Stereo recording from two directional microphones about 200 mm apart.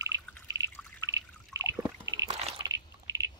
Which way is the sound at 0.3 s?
10° left (ahead or behind).